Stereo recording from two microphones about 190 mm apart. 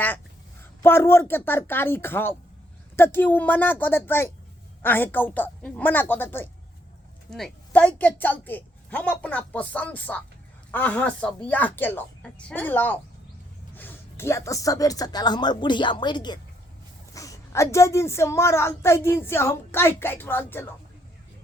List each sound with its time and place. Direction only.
0.8 s speech: 10° left (ahead or behind)